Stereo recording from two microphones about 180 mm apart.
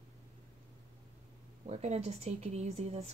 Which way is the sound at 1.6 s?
35° right (ahead or behind).